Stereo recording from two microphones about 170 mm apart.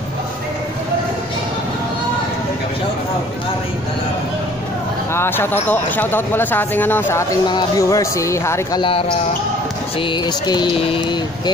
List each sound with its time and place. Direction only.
5.1 s speech: 15° left (ahead or behind)
7.4 s speech: 25° left (ahead or behind)
10.1 s speech: 25° left (ahead or behind)